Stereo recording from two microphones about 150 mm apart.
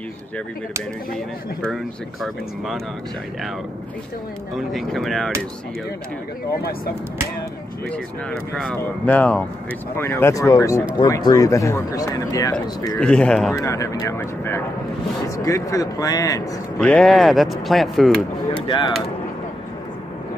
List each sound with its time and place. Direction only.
4.6 s speech: centre (ahead or behind)
7.9 s speech: 5° left (ahead or behind); by 12.5 s 25° left (ahead or behind)
13.0 s speech: 5° left (ahead or behind)
13.6 s speech: 20° left (ahead or behind)
16.8 s speech: 5° left (ahead or behind)
18.7 s speech: 30° left (ahead or behind)